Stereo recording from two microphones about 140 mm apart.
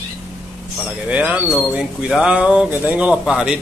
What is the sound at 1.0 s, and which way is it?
Speech, 10° right (ahead or behind).